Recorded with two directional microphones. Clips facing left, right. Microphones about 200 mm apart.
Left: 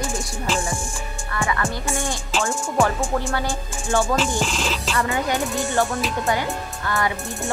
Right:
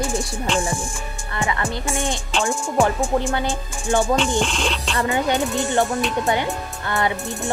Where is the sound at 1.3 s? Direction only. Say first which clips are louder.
Even; 20° right (ahead or behind).